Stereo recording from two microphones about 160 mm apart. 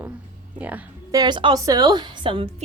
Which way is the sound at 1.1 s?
25° right (ahead or behind).